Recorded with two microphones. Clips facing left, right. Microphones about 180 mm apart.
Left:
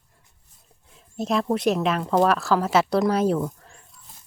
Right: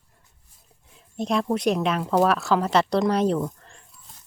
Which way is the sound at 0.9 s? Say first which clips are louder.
Even; centre (ahead or behind).